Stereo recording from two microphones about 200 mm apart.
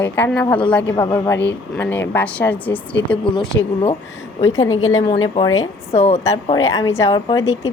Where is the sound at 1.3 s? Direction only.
60° left (ahead or behind).